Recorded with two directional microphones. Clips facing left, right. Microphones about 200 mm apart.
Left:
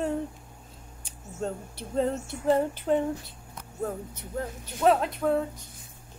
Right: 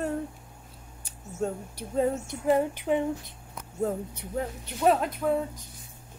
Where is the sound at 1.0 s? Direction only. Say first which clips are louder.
Right 2 dB; 10° right (ahead or behind).